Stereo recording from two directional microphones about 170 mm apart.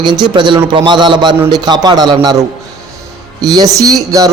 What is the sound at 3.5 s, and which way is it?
Speech, 20° right (ahead or behind).